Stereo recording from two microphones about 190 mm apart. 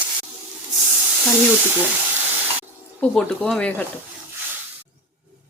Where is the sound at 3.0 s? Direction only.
5° left (ahead or behind).